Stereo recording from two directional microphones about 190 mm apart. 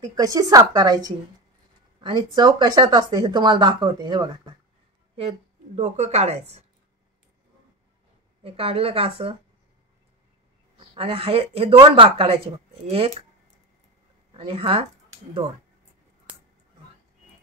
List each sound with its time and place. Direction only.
0.0 s speech: 20° right (ahead or behind)
5.8 s speech: 35° right (ahead or behind)
8.5 s speech: 30° right (ahead or behind)
11.0 s speech: 30° right (ahead or behind)
14.3 s speech: 30° right (ahead or behind)